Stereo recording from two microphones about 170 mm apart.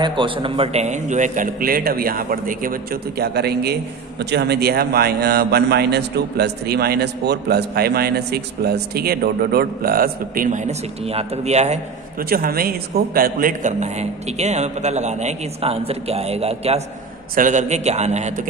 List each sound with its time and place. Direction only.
0.0 s a man's voice: 30° right (ahead or behind)
12.2 s a man's voice: 60° right (ahead or behind)